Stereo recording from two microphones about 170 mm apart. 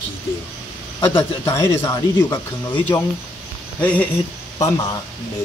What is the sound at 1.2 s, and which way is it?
Speech, 15° left (ahead or behind).